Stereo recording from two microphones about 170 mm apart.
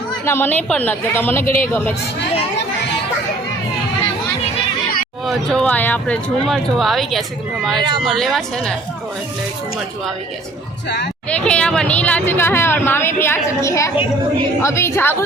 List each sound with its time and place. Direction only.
0.3 s speech: 10° left (ahead or behind)
5.2 s speech: centre (ahead or behind)
7.8 s speech: 25° right (ahead or behind)
8.0 s speech: centre (ahead or behind)
10.8 s speech: 80° left
11.3 s speech: 5° left (ahead or behind)